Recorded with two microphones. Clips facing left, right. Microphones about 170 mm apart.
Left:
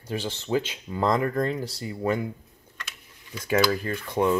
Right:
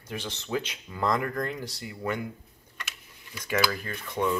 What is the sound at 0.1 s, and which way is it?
Speech, 30° left (ahead or behind).